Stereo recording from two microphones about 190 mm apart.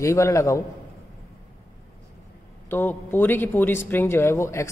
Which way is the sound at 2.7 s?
10° left (ahead or behind).